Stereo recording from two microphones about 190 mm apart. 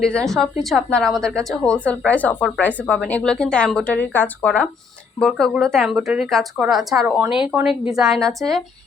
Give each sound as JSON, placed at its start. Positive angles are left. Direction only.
{"t": 0.0, "sound": "a woman's voice", "side_deg": 5}